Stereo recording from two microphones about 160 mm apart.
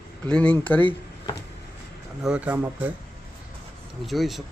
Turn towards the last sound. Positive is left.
turn(degrees=0)  # may be behind; listen again after turning